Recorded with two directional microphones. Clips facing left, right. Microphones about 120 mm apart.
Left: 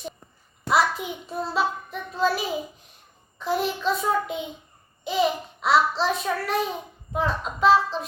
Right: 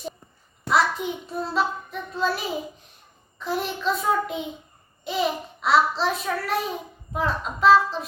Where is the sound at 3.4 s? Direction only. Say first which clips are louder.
Left 2 dB; centre (ahead or behind).